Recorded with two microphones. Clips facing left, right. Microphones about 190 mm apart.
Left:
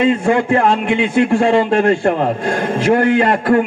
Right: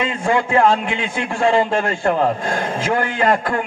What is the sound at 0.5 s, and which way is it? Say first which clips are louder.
A man's voice: left 2 dB; 60° left (ahead or behind).